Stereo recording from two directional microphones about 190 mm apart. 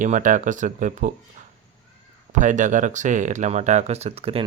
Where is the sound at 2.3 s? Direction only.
40° right (ahead or behind).